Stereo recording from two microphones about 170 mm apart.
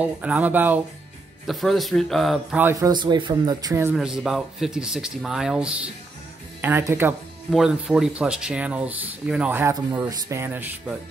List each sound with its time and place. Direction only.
0.0 s speech: 10° right (ahead or behind)
1.5 s speech: centre (ahead or behind)
2.6 s speech: 20° right (ahead or behind)
3.9 s speech: 5° right (ahead or behind)
6.6 s speech: 15° right (ahead or behind)
7.5 s speech: 5° right (ahead or behind)